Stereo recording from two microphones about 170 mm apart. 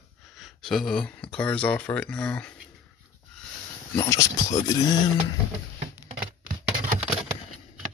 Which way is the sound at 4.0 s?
20° left (ahead or behind).